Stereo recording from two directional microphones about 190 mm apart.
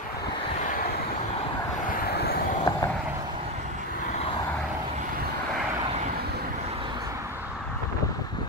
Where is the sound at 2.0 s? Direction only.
55° left (ahead or behind).